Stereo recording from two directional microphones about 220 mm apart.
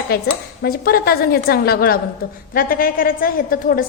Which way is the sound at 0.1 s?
45° left (ahead or behind).